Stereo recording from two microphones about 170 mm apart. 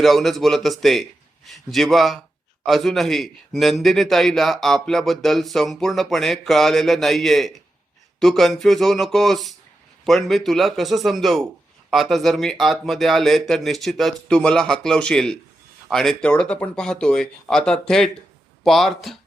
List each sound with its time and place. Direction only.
0.0 s a man's voice: centre (ahead or behind)